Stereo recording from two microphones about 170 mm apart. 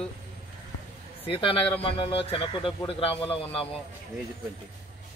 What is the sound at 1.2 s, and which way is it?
Speech, 30° left (ahead or behind).